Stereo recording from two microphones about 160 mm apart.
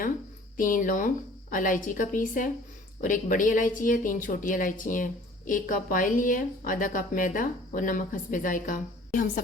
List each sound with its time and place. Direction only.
0.5 s a woman's voice: 55° left (ahead or behind)